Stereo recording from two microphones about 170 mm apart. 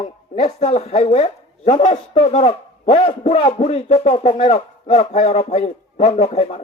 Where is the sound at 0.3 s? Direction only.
40° left (ahead or behind).